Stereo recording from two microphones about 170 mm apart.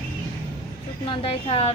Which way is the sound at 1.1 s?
35° left (ahead or behind).